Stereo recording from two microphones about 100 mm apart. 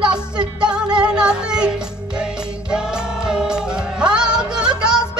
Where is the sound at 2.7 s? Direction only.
5° right (ahead or behind).